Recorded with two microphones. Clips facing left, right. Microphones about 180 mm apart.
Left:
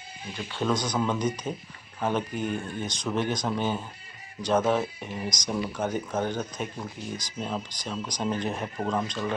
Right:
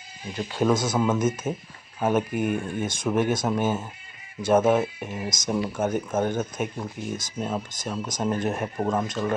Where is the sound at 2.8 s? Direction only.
50° right (ahead or behind).